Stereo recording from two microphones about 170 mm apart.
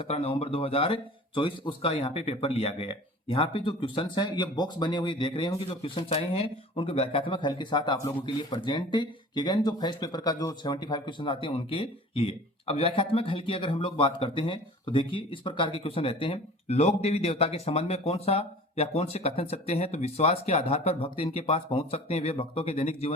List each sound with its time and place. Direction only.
0.0 s a man's voice: 35° left (ahead or behind)